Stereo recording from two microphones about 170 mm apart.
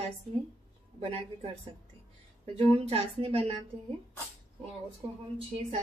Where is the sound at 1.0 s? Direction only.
35° right (ahead or behind).